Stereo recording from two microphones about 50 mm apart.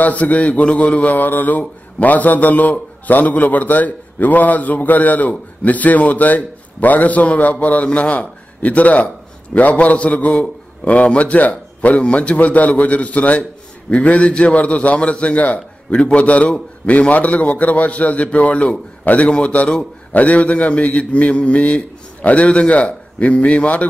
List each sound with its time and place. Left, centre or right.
0.0 s a man's voice: left